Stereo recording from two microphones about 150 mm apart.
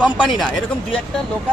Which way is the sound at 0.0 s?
5° left (ahead or behind).